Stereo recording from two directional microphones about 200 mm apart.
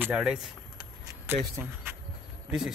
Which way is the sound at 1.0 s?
10° right (ahead or behind).